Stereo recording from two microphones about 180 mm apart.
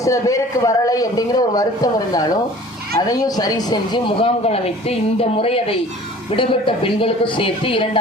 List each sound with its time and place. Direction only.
0.0 s a man's voice: 15° left (ahead or behind)